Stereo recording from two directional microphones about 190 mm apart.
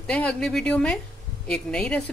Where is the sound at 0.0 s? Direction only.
5° left (ahead or behind).